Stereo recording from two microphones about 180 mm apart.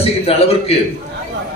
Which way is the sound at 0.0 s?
35° left (ahead or behind).